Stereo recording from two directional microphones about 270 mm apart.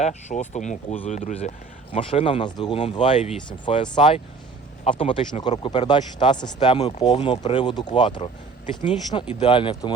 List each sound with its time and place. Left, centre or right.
0.0 s speech: left
4.9 s speech: centre